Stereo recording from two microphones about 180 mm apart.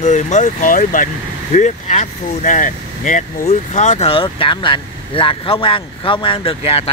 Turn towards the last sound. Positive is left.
turn(degrees=35)  # may be behind; listen again after turning